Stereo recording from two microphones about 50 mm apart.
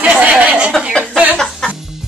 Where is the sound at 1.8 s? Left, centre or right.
Centre.